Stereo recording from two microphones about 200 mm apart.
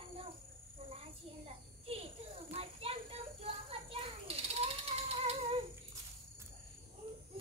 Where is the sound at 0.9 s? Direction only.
30° right (ahead or behind).